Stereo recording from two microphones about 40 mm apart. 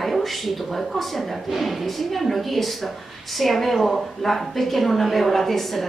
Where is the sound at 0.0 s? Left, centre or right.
Centre.